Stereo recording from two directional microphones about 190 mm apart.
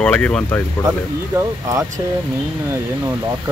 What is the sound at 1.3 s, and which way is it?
Speech, 15° right (ahead or behind).